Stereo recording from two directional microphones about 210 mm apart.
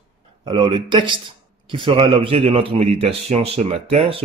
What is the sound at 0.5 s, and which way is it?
Speech, 25° right (ahead or behind).